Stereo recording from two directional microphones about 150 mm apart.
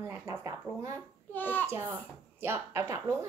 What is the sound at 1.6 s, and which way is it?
Speech, 15° right (ahead or behind).